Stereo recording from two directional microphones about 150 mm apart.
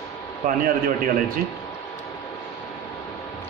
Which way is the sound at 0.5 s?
75° right (ahead or behind).